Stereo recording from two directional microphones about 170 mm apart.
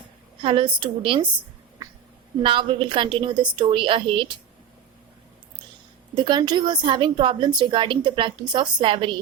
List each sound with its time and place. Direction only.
0.4 s a woman's voice: 30° right (ahead or behind)
2.4 s a woman's voice: 30° right (ahead or behind)
6.1 s a woman's voice: 25° right (ahead or behind)